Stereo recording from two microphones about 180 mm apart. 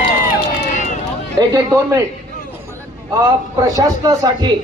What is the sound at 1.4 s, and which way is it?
Speech, 25° right (ahead or behind).